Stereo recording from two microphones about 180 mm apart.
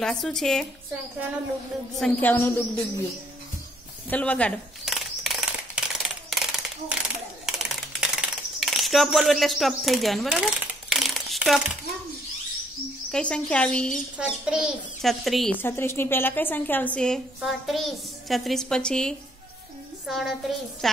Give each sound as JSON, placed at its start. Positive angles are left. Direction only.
{"t": 0.0, "sound": "a woman's voice", "side_deg": 0}
{"t": 2.0, "sound": "a woman's voice", "side_deg": 5}
{"t": 4.1, "sound": "a sound", "side_deg": 5}
{"t": 7.4, "sound": "typing", "side_deg": 0}
{"t": 13.1, "sound": "a woman's voice", "side_deg": 5}
{"t": 14.4, "sound": "a woman's voice", "side_deg": -5}
{"t": 15.5, "sound": "a woman's voice", "side_deg": 10}